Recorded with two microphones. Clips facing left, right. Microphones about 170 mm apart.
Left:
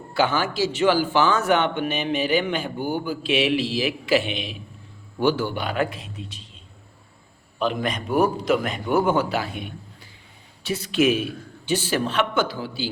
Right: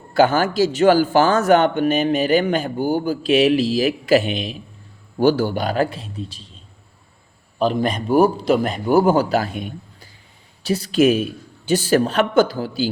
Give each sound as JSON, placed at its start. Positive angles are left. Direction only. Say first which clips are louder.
{"t": 0.1, "sound": "a man's voice", "louder": "right 6 dB", "side_deg": -45}
{"t": 7.6, "sound": "a man's voice", "louder": "right 5 dB", "side_deg": -35}